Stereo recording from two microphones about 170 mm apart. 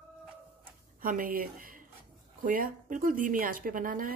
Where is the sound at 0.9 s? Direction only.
55° right (ahead or behind).